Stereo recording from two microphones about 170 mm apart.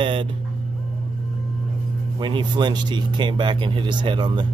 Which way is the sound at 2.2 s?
25° right (ahead or behind).